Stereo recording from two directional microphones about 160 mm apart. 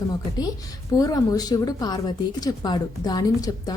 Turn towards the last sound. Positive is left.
turn(degrees=25)  # may be behind; listen again after turning